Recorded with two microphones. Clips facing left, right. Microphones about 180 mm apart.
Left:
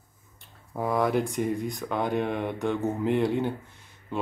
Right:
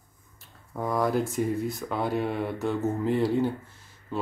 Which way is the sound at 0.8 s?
Centre (ahead or behind).